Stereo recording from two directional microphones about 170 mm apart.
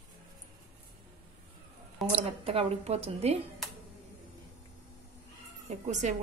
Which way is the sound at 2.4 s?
35° right (ahead or behind).